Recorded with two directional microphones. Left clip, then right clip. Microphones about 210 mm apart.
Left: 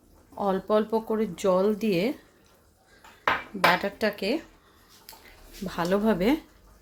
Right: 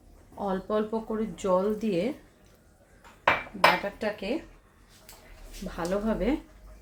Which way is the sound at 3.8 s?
50° left (ahead or behind).